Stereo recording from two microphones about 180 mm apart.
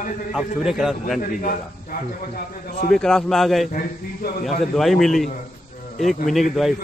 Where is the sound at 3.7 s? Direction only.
50° left (ahead or behind).